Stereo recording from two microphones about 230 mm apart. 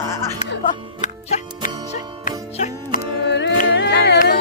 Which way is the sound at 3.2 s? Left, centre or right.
Left.